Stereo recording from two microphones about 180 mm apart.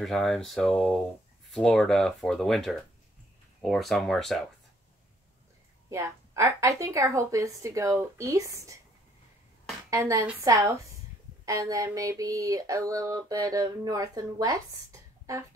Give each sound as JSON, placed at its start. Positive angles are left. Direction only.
{"t": 0.0, "sound": "speech", "side_deg": 0}
{"t": 5.9, "sound": "a woman's voice", "side_deg": -15}
{"t": 9.8, "sound": "a woman's voice", "side_deg": -20}
{"t": 11.4, "sound": "a sound", "side_deg": -20}